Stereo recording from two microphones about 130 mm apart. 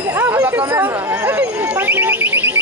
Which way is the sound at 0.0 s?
15° right (ahead or behind).